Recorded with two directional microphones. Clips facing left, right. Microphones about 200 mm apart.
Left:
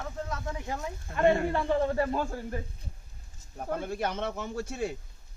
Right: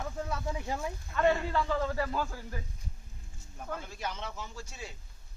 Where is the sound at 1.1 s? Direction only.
50° left (ahead or behind).